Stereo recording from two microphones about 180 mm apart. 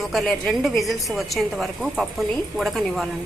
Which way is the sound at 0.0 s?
Centre (ahead or behind).